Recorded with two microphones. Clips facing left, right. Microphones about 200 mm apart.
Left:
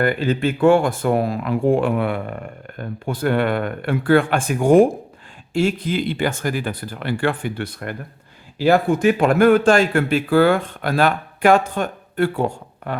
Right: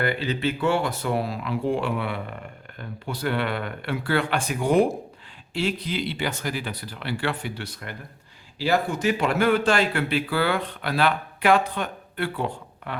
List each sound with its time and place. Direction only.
0.0 s speech: 50° left (ahead or behind)